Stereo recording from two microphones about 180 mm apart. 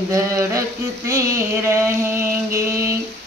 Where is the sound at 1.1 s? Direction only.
15° right (ahead or behind).